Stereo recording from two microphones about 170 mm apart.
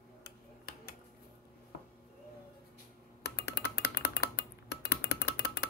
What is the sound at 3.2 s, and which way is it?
Music, 70° left (ahead or behind).